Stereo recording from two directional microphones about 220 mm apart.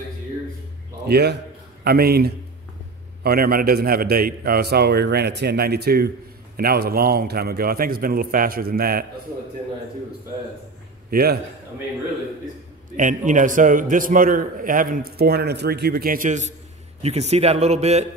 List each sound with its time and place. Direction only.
1.0 s a man's voice: 45° right (ahead or behind)
11.1 s a man's voice: 45° right (ahead or behind)
12.9 s a man's voice: 35° right (ahead or behind)